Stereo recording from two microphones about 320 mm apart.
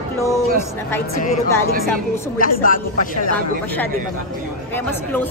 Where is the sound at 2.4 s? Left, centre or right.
Left.